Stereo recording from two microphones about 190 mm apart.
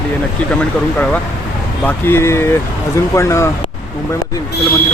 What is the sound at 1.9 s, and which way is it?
Speech, 10° left (ahead or behind).